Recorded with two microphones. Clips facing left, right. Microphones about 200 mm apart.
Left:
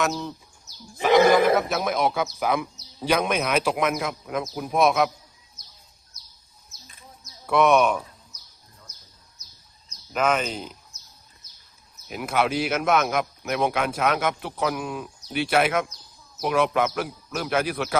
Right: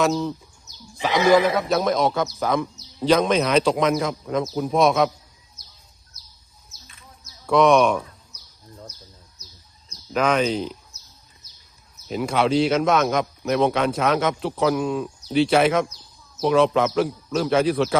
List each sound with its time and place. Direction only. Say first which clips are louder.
0.0 s speech: right 5 dB; centre (ahead or behind)
0.9 s a man's voice: even; 55° left (ahead or behind)
1.7 s a man's voice: right 4 dB; 5° left (ahead or behind)
7.4 s a man's voice: right 3 dB; 5° left (ahead or behind)
10.1 s a man's voice: right 4 dB; 5° left (ahead or behind)
12.0 s a man's voice: right 3 dB; 5° left (ahead or behind)